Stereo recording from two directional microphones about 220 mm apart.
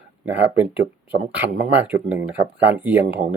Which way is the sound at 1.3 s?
5° right (ahead or behind).